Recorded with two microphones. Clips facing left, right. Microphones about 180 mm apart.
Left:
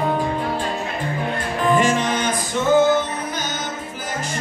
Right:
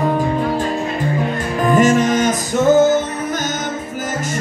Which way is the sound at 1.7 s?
45° right (ahead or behind).